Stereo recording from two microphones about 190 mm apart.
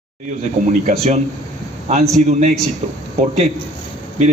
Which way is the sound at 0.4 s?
35° right (ahead or behind).